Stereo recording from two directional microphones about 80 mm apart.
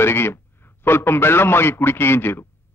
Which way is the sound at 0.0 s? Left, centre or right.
Left.